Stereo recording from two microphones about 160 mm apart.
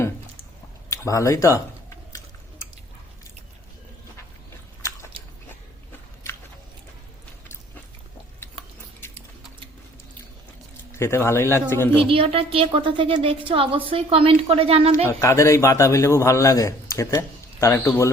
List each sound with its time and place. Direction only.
0.9 s speech: 20° left (ahead or behind)
10.9 s speech: 15° left (ahead or behind)
12.0 s a woman's voice: 35° right (ahead or behind)
15.0 s a man's voice: 20° left (ahead or behind)